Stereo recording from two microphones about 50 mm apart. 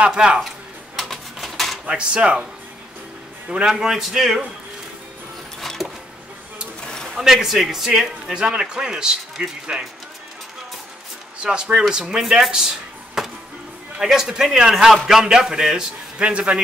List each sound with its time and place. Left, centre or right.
0.0 s speech: centre
0.9 s bird: centre
1.9 s speech: centre
3.4 s speech: centre
5.6 s a sound: centre
7.2 s speech: centre
11.3 s speech: centre
16.2 s speech: right